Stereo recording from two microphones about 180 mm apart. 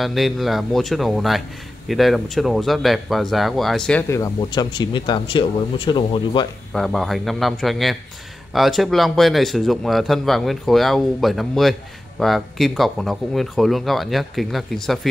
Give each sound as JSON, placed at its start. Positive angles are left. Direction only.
{"t": 0.0, "sound": "speech", "side_deg": 0}
{"t": 4.1, "sound": "speech", "side_deg": 20}
{"t": 6.7, "sound": "speech", "side_deg": 0}